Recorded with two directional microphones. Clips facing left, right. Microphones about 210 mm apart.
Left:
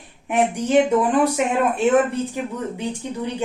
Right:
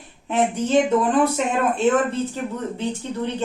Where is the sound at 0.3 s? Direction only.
15° left (ahead or behind).